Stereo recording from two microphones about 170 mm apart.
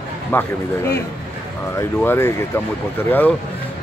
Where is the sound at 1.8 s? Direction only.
15° left (ahead or behind).